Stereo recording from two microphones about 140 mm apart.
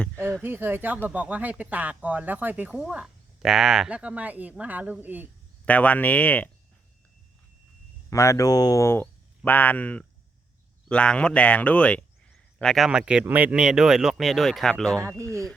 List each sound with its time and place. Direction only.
0.4 s speech: 15° right (ahead or behind)
5.6 s speech: 10° left (ahead or behind)
8.1 s speech: 20° left (ahead or behind); by 14.9 s 5° left (ahead or behind)
14.9 s speech: 20° right (ahead or behind)